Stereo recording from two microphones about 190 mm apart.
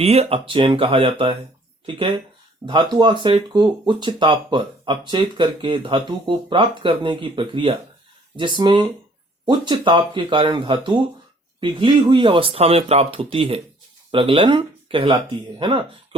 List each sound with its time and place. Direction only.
0.0 s speech: 35° right (ahead or behind)
2.6 s speech: 25° right (ahead or behind)